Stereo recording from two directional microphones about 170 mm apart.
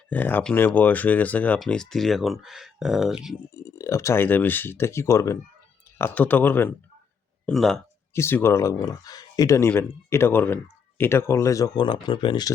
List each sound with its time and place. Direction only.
0.1 s speech: 10° left (ahead or behind)
3.5 s speech: 15° left (ahead or behind); by 7.8 s centre (ahead or behind)
8.1 s speech: 15° left (ahead or behind)